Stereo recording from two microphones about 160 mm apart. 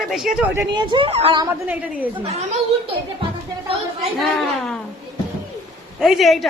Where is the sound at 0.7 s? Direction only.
30° right (ahead or behind).